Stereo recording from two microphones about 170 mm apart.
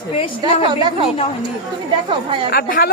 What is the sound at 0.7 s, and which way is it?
Speech, 25° right (ahead or behind).